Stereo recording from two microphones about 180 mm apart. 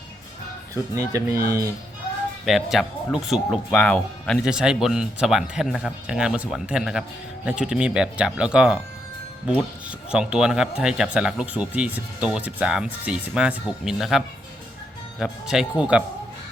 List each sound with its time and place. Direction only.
0.7 s speech: 20° right (ahead or behind)
2.4 s speech: centre (ahead or behind)
10.1 s speech: 5° right (ahead or behind)